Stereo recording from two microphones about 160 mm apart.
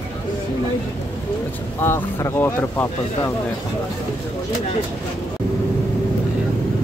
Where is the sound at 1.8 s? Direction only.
15° left (ahead or behind).